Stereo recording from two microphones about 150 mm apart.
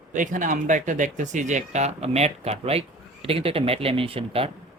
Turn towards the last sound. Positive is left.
turn(degrees=-40)  # may be behind; listen again after turning